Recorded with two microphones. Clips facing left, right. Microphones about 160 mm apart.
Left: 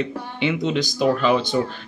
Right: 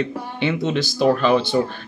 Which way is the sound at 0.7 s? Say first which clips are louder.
Right 2 dB; 15° left (ahead or behind).